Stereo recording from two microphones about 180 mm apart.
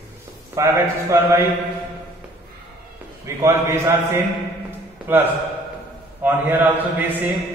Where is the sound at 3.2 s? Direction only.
15° right (ahead or behind).